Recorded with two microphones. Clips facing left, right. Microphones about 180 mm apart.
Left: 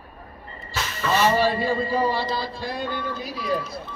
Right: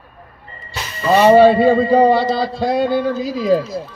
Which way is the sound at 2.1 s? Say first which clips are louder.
Right 10 dB; 80° right.